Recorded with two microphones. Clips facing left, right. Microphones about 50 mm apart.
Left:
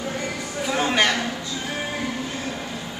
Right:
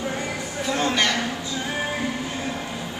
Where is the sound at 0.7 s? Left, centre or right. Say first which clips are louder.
Left 2 dB; centre.